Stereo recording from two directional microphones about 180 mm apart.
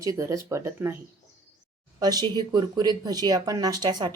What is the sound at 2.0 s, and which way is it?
A woman's voice, 20° right (ahead or behind).